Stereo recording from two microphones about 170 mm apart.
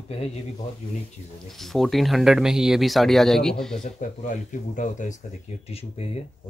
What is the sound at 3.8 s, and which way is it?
Speech, 45° left (ahead or behind).